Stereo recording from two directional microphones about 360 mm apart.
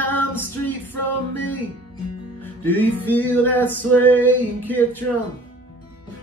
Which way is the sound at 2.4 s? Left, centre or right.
Centre.